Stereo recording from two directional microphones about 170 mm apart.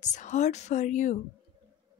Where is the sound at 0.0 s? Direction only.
45° left (ahead or behind).